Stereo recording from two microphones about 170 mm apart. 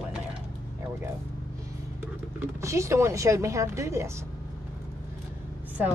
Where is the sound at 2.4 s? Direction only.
15° right (ahead or behind).